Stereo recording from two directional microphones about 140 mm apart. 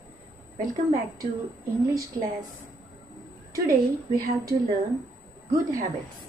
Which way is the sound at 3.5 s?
25° right (ahead or behind).